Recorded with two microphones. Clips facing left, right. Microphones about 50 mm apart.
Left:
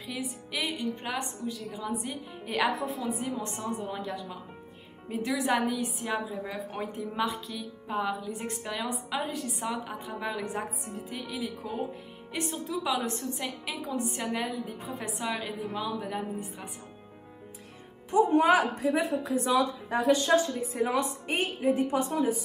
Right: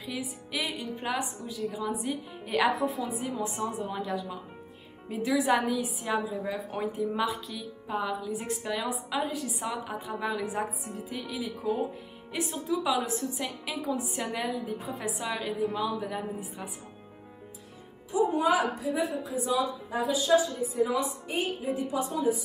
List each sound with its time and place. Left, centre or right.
0.0 s a woman's voice: centre
18.1 s a woman's voice: left